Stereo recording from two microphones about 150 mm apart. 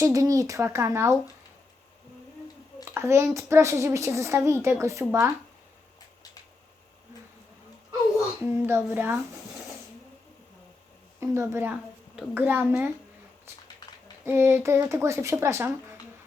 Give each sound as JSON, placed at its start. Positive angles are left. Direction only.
{"t": 0.0, "sound": "a woman's voice", "side_deg": -20}
{"t": 2.9, "sound": "a woman's voice", "side_deg": -15}
{"t": 8.6, "sound": "speech", "side_deg": -15}
{"t": 11.2, "sound": "a woman's voice", "side_deg": -15}
{"t": 14.3, "sound": "speech", "side_deg": -15}